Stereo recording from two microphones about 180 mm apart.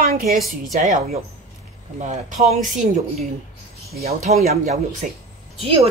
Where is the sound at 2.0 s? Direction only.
40° right (ahead or behind).